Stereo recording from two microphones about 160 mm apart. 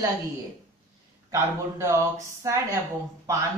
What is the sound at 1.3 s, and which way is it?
Speech, 20° right (ahead or behind).